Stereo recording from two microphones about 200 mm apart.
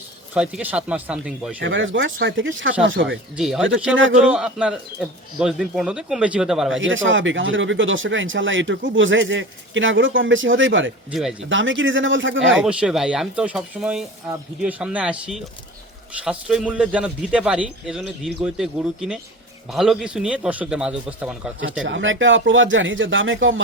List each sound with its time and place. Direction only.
0.3 s a man's voice: 5° right (ahead or behind)
1.6 s speech: 70° right (ahead or behind)
3.3 s a man's voice: centre (ahead or behind)
6.7 s speech: 70° right (ahead or behind)
11.1 s a man's voice: centre (ahead or behind)
11.3 s speech: 70° right (ahead or behind)
12.6 s a man's voice: 5° right (ahead or behind)
21.8 s speech: 70° right (ahead or behind)